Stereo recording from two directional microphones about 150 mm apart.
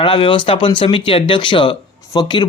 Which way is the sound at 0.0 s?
35° left (ahead or behind).